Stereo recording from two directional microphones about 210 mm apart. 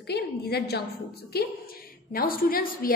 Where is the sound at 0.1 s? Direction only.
50° left (ahead or behind).